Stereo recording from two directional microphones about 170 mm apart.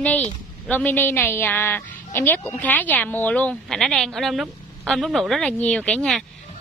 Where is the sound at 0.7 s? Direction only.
10° left (ahead or behind).